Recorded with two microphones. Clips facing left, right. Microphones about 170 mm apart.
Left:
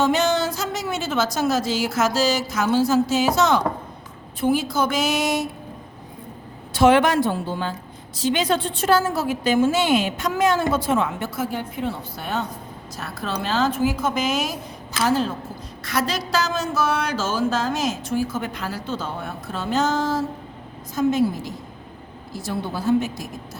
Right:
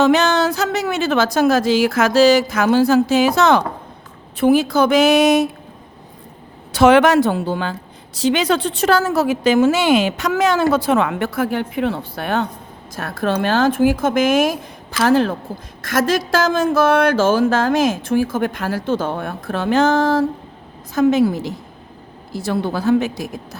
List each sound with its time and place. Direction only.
0.0 s a woman's voice: 70° right (ahead or behind)
6.7 s a woman's voice: 80° right
13.0 s a woman's voice: 50° right (ahead or behind)
15.8 s a woman's voice: 50° right (ahead or behind)
20.9 s a woman's voice: 70° right (ahead or behind)